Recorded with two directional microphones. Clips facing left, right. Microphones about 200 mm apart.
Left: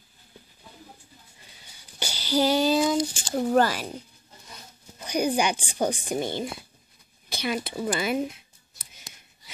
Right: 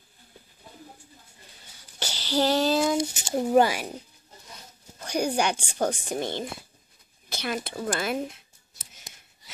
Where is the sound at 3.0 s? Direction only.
25° right (ahead or behind).